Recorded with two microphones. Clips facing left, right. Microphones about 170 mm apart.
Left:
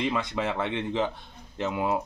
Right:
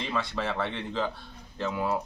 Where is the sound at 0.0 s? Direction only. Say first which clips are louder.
Left 3 dB; 20° left (ahead or behind).